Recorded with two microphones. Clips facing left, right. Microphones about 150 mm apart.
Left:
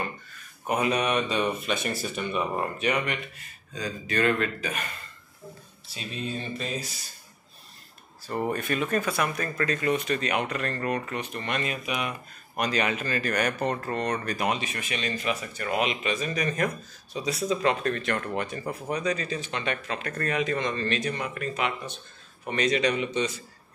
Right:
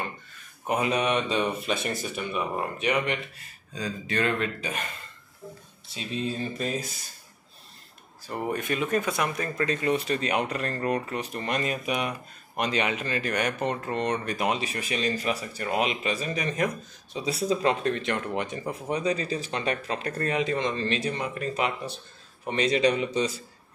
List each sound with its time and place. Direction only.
0.7 s speech: 25° right (ahead or behind)
2.0 s speech: 10° right (ahead or behind)
2.8 s speech: 15° right (ahead or behind)
5.9 s speech: 25° right (ahead or behind)
8.3 s speech: 10° right (ahead or behind); by 12.1 s 35° right (ahead or behind)
12.5 s speech: 25° right (ahead or behind)
17.2 s speech: 30° right (ahead or behind)